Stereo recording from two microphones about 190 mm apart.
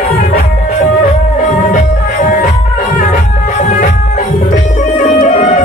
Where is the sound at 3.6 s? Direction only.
40° left (ahead or behind).